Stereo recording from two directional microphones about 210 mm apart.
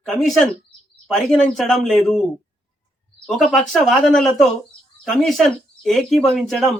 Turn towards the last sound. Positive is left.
turn(degrees=0)  # may be behind; listen again after turning